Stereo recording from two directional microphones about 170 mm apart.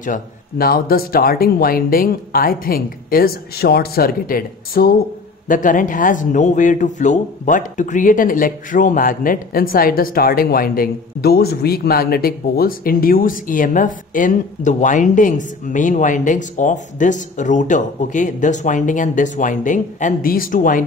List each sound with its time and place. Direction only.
0.0 s a man's voice: 55° left (ahead or behind)